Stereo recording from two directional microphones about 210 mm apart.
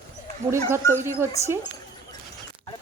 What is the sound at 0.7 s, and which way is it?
Speech, 10° right (ahead or behind).